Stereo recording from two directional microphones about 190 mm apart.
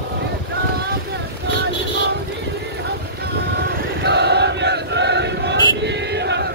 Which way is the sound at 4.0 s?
60° right (ahead or behind).